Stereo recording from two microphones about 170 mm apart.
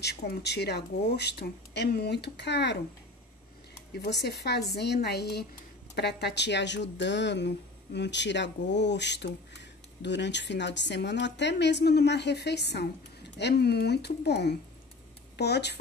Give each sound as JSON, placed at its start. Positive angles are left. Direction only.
{"t": 0.0, "sound": "speech", "side_deg": 75}
{"t": 3.9, "sound": "speech", "side_deg": 75}